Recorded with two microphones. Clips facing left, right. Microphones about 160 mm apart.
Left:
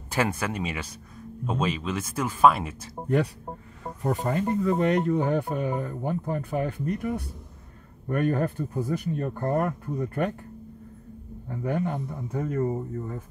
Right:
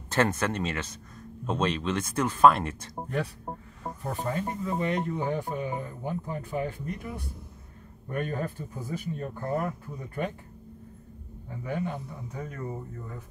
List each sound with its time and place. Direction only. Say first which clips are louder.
0.1 s speech: right 1 dB; 10° left (ahead or behind)
4.1 s speech: left 6 dB; 70° left (ahead or behind)
11.4 s a man's voice: left 4 dB; 50° left (ahead or behind)